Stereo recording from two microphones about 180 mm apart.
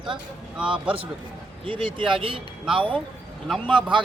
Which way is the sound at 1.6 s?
30° right (ahead or behind).